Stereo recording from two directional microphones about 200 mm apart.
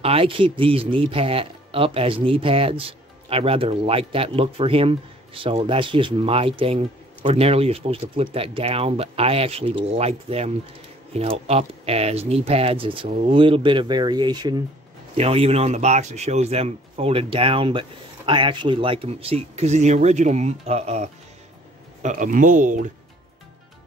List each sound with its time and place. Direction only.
0.0 s speech: 30° right (ahead or behind)